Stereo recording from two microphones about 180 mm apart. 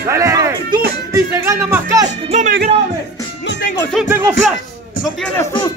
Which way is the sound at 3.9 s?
10° right (ahead or behind).